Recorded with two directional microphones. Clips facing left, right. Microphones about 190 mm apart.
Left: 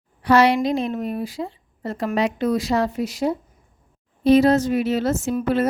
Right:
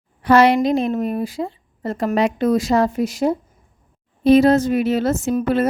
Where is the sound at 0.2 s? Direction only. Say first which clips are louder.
Right 3 dB; 50° right (ahead or behind).